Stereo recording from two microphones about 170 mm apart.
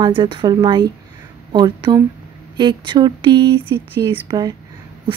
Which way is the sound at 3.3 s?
85° right.